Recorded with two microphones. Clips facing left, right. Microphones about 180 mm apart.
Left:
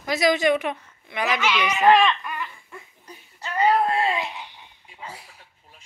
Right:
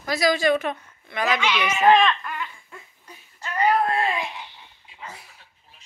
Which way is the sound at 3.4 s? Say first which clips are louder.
Left 1 dB; 25° left (ahead or behind).